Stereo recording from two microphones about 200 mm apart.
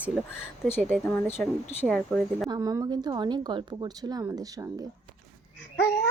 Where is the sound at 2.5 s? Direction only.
15° right (ahead or behind).